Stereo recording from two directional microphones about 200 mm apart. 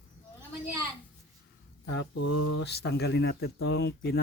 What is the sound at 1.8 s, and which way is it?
Speech, 60° left (ahead or behind).